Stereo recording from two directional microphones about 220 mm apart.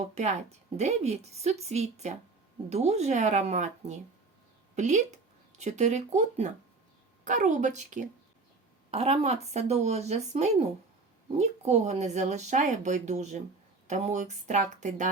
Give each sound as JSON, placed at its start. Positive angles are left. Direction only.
{"t": 0.0, "sound": "speech", "side_deg": -30}